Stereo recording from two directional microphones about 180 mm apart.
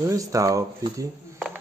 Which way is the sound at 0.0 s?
20° right (ahead or behind).